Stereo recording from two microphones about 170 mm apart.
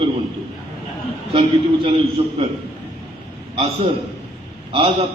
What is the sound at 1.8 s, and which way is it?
Speech, 30° right (ahead or behind).